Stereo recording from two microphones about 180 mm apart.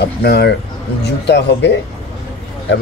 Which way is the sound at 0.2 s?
65° left (ahead or behind).